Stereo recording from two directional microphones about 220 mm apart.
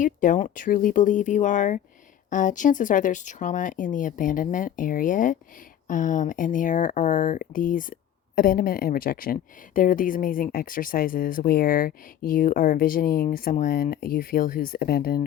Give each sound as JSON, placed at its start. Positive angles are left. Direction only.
{"t": 0.0, "sound": "a woman's voice", "side_deg": 35}